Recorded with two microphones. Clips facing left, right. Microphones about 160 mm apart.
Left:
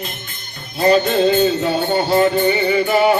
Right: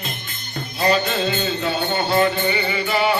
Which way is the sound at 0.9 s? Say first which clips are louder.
Left 9 dB; 45° left (ahead or behind).